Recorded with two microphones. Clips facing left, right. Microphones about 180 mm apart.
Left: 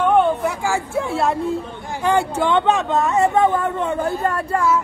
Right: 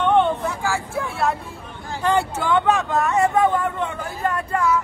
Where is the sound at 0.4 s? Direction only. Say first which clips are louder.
Left 3 dB; 15° left (ahead or behind).